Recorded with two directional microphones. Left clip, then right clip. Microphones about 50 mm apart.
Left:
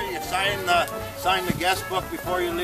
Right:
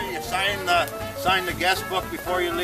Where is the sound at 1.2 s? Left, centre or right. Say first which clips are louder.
Right 1 dB; right.